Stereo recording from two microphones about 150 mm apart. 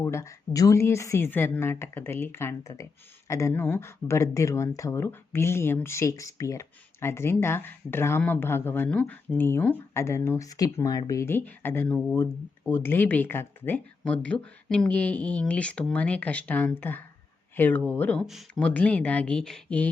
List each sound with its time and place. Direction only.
0.0 s speech: 20° left (ahead or behind); by 18.7 s centre (ahead or behind)
18.7 s speech: 10° left (ahead or behind)